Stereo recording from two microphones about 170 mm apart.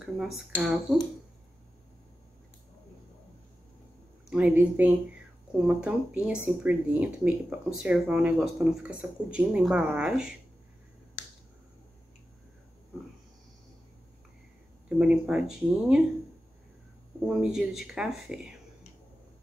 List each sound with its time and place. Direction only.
0.0 s speech: centre (ahead or behind)
4.3 s a woman's voice: 5° right (ahead or behind)
15.0 s speech: 5° right (ahead or behind)
17.2 s speech: 5° right (ahead or behind)